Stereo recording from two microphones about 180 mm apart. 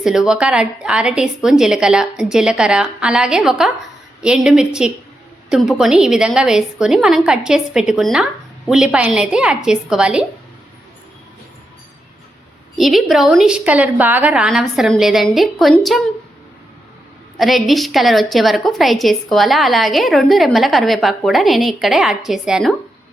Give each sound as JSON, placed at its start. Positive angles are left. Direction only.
{"t": 0.0, "sound": "a woman's voice", "side_deg": -5}
{"t": 12.7, "sound": "a woman's voice", "side_deg": 0}
{"t": 17.3, "sound": "a woman's voice", "side_deg": 0}